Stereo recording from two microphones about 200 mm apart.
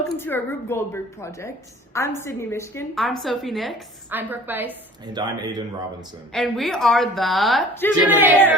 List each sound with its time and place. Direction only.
0.0 s speech: 10° left (ahead or behind)
2.9 s a woman's voice: centre (ahead or behind)
5.1 s speech: 20° right (ahead or behind)
6.3 s a woman's voice: centre (ahead or behind)